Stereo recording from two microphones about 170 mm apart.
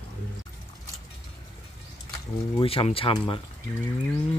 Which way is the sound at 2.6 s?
35° left (ahead or behind).